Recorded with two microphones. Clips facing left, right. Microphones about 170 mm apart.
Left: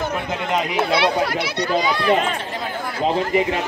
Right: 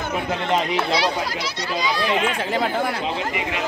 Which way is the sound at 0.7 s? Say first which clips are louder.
Left 3 dB; 60° left (ahead or behind).